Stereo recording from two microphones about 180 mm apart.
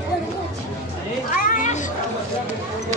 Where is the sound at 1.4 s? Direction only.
45° left (ahead or behind).